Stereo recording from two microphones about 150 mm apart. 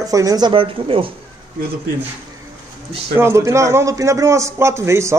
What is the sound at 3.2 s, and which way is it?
A man's voice, 20° right (ahead or behind).